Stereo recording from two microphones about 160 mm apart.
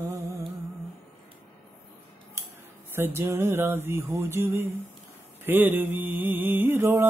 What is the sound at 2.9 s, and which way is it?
Mantra, 15° right (ahead or behind).